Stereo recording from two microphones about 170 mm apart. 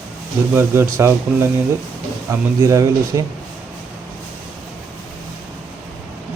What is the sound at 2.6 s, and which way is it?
Speech, 20° right (ahead or behind).